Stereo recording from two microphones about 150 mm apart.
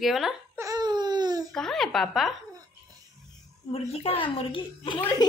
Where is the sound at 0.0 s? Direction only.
Centre (ahead or behind).